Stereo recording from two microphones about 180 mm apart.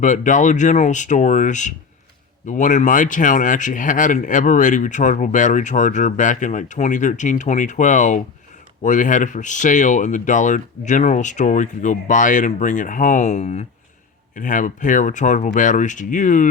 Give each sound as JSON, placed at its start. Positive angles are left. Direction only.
{"t": 0.0, "sound": "speech", "side_deg": 45}